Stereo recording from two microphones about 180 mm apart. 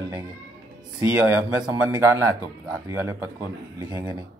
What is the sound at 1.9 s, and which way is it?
Speech, 15° right (ahead or behind).